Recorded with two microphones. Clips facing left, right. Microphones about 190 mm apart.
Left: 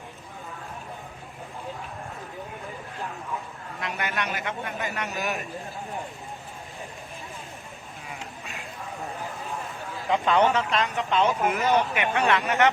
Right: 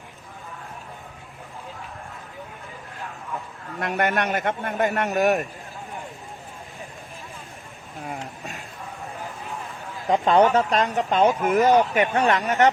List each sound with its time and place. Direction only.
3.8 s a man's voice: 55° right (ahead or behind)
8.0 s a sound: 45° right (ahead or behind)
10.1 s speech: 35° right (ahead or behind)